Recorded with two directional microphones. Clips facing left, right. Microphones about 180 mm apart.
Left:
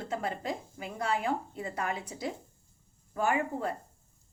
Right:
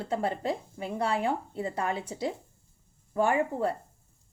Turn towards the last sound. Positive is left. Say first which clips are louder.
# right 4 dB
turn(degrees=-30)  # may be behind; listen again after turning